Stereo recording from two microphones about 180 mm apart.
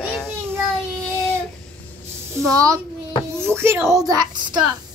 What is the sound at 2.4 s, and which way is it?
A child's voice, 20° right (ahead or behind).